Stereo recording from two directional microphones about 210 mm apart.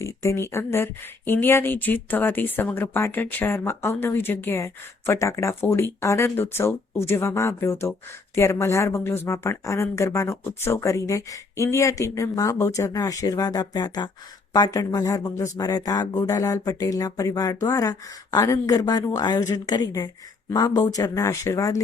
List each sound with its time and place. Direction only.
0.0 s speech: 15° left (ahead or behind)